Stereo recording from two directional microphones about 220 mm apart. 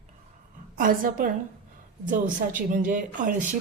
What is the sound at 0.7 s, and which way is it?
Speech, 40° right (ahead or behind).